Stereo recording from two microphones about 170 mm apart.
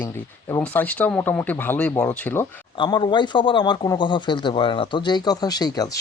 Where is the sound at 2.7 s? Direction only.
30° left (ahead or behind).